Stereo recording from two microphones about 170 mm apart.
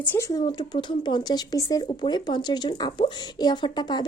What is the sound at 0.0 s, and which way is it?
Speech, 15° left (ahead or behind).